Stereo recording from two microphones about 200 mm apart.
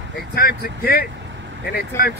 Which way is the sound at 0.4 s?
50° left (ahead or behind).